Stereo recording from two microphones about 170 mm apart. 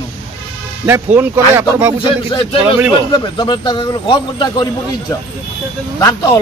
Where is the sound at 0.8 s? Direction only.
15° right (ahead or behind).